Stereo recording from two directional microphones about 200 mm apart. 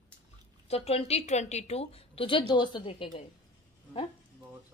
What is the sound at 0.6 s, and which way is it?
A woman's voice, 30° left (ahead or behind).